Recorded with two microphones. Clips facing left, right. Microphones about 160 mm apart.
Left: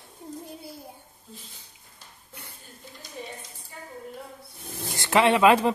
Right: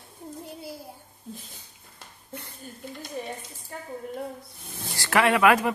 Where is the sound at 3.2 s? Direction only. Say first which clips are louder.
Right 4 dB; 50° right (ahead or behind).